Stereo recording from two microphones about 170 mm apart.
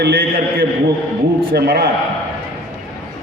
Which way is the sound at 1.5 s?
60° right (ahead or behind).